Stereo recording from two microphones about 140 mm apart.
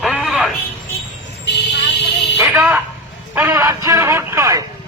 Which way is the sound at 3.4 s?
15° right (ahead or behind).